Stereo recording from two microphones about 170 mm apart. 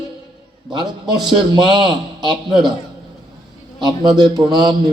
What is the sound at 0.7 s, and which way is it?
A man's voice, 25° right (ahead or behind).